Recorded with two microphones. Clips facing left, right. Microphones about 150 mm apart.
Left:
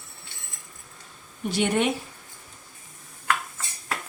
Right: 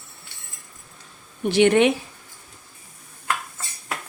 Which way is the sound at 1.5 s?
80° right.